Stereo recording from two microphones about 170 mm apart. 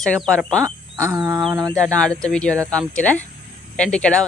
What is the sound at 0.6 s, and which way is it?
Speech, 20° right (ahead or behind).